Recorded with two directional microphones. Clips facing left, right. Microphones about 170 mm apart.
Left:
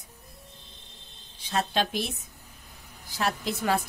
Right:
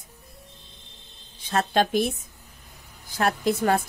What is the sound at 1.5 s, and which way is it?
Speech, 50° right (ahead or behind).